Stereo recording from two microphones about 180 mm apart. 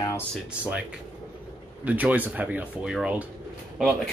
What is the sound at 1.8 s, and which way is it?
Speech, 10° right (ahead or behind).